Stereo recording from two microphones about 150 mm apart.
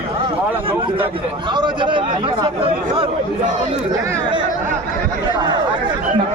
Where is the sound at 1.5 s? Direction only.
30° right (ahead or behind).